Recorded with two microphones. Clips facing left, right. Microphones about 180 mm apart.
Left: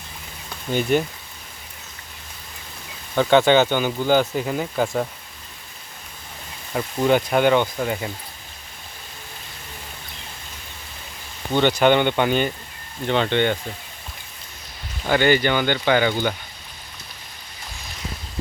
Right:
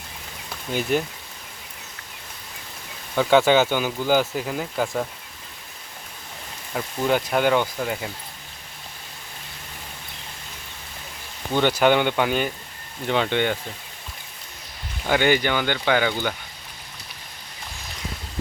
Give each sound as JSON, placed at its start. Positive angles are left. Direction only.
{"t": 0.7, "sound": "speech", "side_deg": 0}
{"t": 3.2, "sound": "speech", "side_deg": -5}
{"t": 6.7, "sound": "speech", "side_deg": 0}
{"t": 11.5, "sound": "speech", "side_deg": -10}
{"t": 15.0, "sound": "speech", "side_deg": -10}